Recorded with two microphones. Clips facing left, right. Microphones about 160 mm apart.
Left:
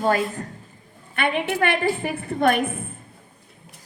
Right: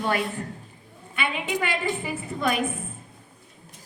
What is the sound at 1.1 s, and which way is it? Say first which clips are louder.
A woman's voice: left 5 dB; 55° left (ahead or behind).